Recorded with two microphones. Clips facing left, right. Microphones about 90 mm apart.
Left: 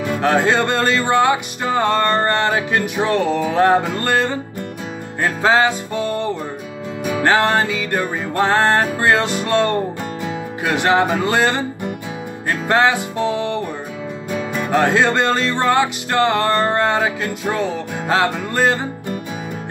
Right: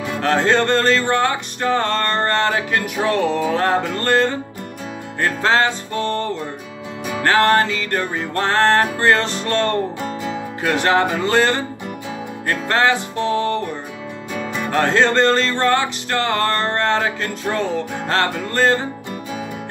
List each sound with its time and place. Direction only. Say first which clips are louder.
0.2 s music: even; 15° left (ahead or behind)
14.7 s music: left 1 dB; 15° left (ahead or behind)